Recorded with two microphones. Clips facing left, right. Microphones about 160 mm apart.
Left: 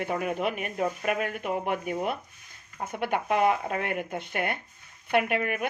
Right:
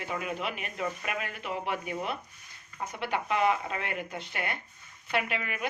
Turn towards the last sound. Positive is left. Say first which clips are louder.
# left 6 dB
turn(degrees=50)  # may be behind; listen again after turning